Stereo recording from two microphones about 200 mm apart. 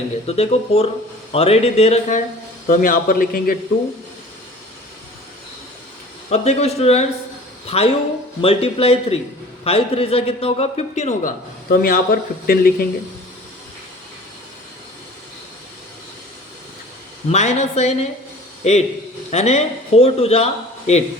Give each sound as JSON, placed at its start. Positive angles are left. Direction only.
{"t": 0.3, "sound": "speech", "side_deg": 30}
{"t": 6.3, "sound": "speech", "side_deg": 30}
{"t": 11.7, "sound": "speech", "side_deg": 45}
{"t": 17.2, "sound": "speech", "side_deg": 35}